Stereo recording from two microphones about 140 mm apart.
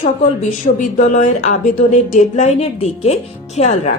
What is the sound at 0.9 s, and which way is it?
A woman's voice, 55° left (ahead or behind).